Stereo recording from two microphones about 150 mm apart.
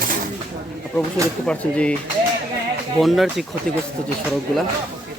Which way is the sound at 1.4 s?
5° left (ahead or behind).